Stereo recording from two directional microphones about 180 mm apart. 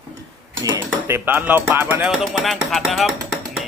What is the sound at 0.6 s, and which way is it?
Cutlery, 20° right (ahead or behind).